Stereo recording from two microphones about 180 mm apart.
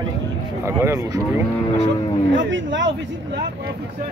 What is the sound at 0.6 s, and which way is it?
Speech, 15° right (ahead or behind).